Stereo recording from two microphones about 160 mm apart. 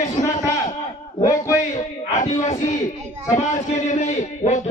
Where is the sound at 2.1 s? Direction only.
50° left (ahead or behind).